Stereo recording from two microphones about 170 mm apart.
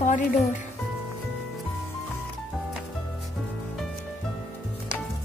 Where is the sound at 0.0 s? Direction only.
45° left (ahead or behind).